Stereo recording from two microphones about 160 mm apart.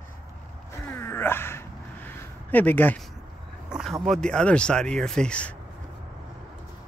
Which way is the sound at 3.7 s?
5° right (ahead or behind).